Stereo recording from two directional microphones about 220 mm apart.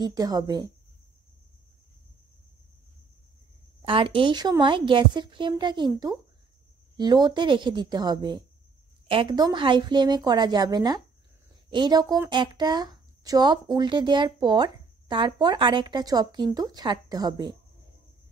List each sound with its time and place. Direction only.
0.0 s a woman's voice: 20° right (ahead or behind)
3.8 s speech: 25° right (ahead or behind)